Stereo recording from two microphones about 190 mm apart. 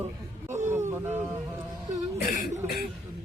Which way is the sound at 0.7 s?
15° right (ahead or behind).